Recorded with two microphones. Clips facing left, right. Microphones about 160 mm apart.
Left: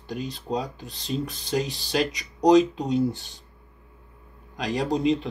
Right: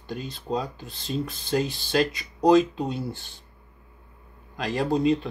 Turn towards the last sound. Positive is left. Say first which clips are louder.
# right 1 dB
turn(degrees=15)  # may be behind; listen again after turning